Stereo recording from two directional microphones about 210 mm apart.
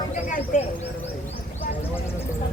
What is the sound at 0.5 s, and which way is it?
Speech, 40° left (ahead or behind).